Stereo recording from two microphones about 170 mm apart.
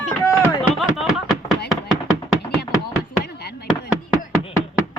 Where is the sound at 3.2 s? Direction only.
70° left (ahead or behind).